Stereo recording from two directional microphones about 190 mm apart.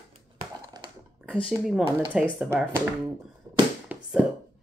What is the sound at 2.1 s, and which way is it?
Speech, 5° right (ahead or behind).